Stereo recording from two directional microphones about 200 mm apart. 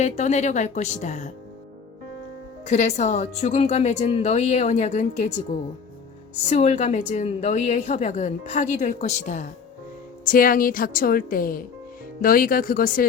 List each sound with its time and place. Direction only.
0.0 s a woman's voice: 35° left (ahead or behind)
2.6 s a woman's voice: 35° left (ahead or behind)
6.5 s a woman's voice: 35° left (ahead or behind)